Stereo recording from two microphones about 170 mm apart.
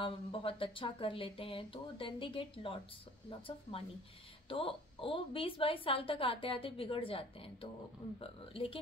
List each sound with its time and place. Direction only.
0.0 s a woman's voice: 30° left (ahead or behind)